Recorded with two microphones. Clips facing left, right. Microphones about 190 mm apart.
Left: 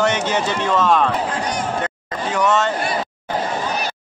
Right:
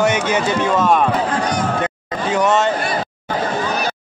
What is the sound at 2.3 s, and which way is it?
Speech, 15° right (ahead or behind).